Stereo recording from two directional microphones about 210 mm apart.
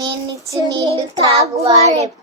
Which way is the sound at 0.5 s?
20° right (ahead or behind).